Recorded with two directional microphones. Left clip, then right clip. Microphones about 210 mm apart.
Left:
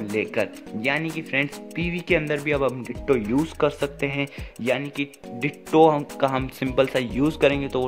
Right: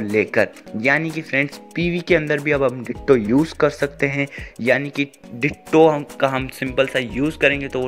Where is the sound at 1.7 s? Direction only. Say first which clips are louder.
Right 7 dB; 35° left (ahead or behind).